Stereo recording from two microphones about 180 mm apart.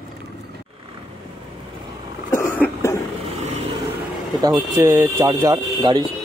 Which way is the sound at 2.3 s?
15° left (ahead or behind).